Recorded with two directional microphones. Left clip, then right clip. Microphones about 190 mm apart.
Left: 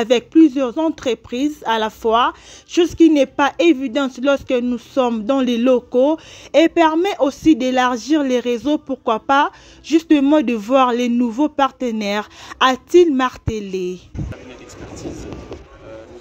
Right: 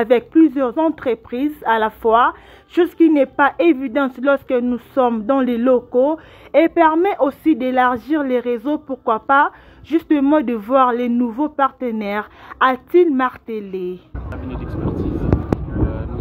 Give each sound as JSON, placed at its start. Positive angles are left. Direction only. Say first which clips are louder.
{"t": 0.0, "sound": "a woman's voice", "louder": "even", "side_deg": 40}